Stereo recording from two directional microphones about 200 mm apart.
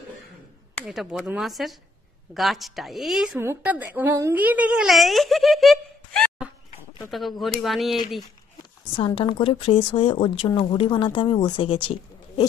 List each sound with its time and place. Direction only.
0.7 s a woman's voice: centre (ahead or behind)
8.9 s speech: 25° left (ahead or behind)